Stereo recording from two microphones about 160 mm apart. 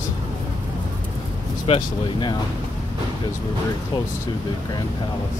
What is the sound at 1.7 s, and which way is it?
Speech, 30° left (ahead or behind).